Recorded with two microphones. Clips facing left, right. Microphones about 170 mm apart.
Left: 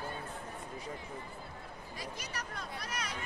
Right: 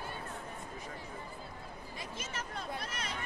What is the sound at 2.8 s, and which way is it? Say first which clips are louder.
Speech: left 1 dB; 25° right (ahead or behind).